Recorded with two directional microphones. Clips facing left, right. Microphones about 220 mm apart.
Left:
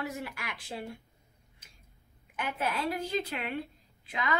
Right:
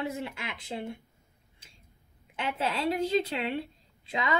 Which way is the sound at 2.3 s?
25° right (ahead or behind).